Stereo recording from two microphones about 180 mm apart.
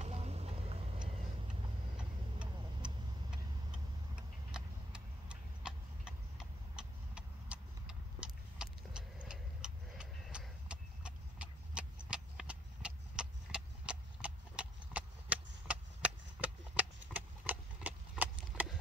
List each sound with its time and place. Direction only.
0.0 s vehicle: 35° right (ahead or behind)
4.1 s tick-tock: 5° right (ahead or behind)
6.7 s vehicle: 5° right (ahead or behind)